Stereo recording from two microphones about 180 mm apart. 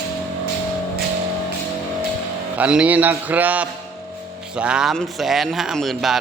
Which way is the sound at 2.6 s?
5° right (ahead or behind).